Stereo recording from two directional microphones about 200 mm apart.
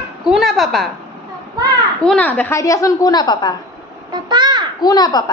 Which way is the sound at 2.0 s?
5° left (ahead or behind).